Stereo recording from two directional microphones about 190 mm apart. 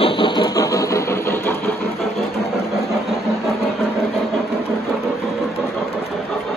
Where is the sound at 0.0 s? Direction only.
25° left (ahead or behind).